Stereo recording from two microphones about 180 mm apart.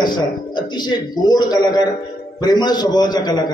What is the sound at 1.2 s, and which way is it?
A man's voice, 25° left (ahead or behind).